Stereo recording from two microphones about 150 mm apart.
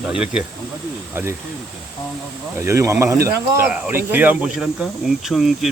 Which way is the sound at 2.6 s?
20° right (ahead or behind).